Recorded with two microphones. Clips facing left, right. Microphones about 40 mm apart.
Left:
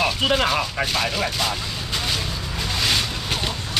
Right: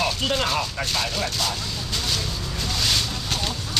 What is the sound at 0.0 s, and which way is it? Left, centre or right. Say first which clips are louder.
Speech: left 3 dB; left.